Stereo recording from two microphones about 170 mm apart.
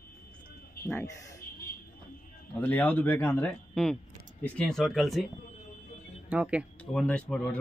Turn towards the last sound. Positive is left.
turn(degrees=5)  # may be behind; listen again after turning